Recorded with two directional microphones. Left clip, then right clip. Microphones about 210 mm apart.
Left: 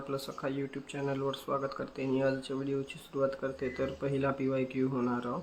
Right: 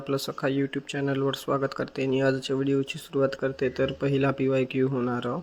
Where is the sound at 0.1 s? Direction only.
30° right (ahead or behind).